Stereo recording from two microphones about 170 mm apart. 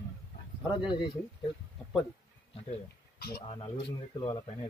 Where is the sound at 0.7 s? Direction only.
25° left (ahead or behind).